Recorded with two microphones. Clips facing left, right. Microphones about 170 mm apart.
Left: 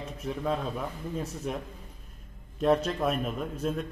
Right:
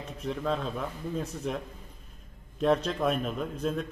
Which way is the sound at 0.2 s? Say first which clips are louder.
Even; 5° left (ahead or behind).